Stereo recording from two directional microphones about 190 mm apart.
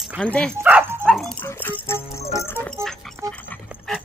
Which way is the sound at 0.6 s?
10° right (ahead or behind).